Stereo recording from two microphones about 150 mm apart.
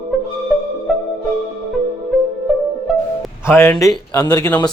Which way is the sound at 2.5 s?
Centre (ahead or behind).